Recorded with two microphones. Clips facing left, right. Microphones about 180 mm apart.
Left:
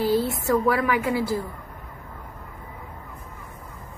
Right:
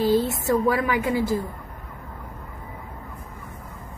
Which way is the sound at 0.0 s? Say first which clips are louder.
Right 2 dB; 20° right (ahead or behind).